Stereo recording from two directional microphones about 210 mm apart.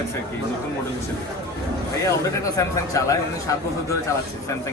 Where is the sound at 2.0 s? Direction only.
15° left (ahead or behind).